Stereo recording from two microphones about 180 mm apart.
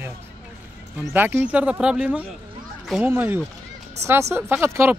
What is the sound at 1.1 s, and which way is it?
Speech, 10° right (ahead or behind).